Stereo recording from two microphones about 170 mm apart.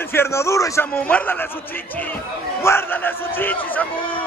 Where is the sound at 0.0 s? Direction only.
15° left (ahead or behind).